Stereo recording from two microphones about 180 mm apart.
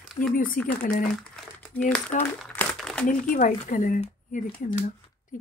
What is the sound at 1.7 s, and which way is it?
Speech, 10° left (ahead or behind).